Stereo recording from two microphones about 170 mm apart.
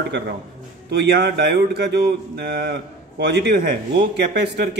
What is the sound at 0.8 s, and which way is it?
A man's voice, 75° right (ahead or behind).